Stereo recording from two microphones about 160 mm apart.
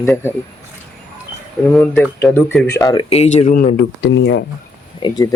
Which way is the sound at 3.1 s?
40° left (ahead or behind).